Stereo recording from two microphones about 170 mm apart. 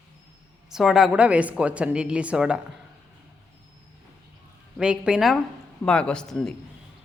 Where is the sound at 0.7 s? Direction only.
5° right (ahead or behind).